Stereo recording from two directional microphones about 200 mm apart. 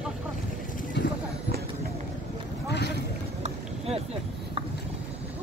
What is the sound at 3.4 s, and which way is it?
Boat, 30° right (ahead or behind).